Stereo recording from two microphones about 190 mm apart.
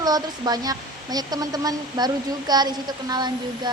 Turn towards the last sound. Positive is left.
turn(degrees=-20)  # may be behind; listen again after turning